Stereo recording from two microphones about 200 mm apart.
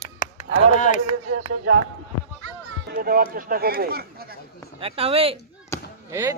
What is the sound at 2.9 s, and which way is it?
A man's voice, 45° right (ahead or behind).